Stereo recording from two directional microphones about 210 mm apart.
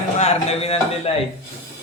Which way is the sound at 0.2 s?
30° left (ahead or behind).